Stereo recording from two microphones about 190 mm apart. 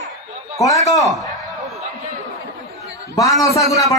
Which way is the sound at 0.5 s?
15° left (ahead or behind).